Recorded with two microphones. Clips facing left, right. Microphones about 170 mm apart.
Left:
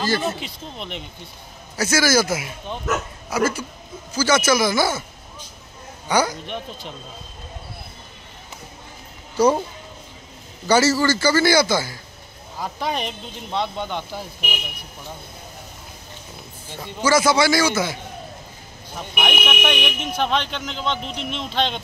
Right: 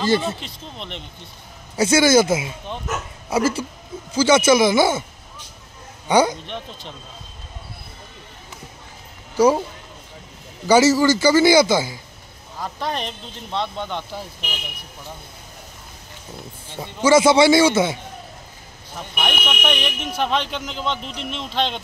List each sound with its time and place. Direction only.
0.4 s speech: 5° left (ahead or behind)
1.8 s a man's voice: 25° right (ahead or behind)
6.0 s a man's voice: 25° right (ahead or behind)
6.4 s speech: 5° left (ahead or behind)
9.4 s speech: 10° right (ahead or behind)
10.7 s a man's voice: 15° right (ahead or behind)
12.5 s speech: 5° left (ahead or behind)
16.8 s a man's voice: 25° right (ahead or behind)
18.9 s speech: 5° left (ahead or behind)